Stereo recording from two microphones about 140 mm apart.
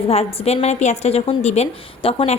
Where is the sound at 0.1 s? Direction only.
45° left (ahead or behind).